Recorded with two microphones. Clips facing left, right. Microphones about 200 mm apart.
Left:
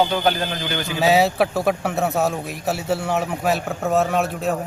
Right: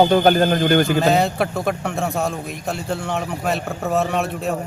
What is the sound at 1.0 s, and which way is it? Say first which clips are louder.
A man's voice: left 1 dB; 5° left (ahead or behind).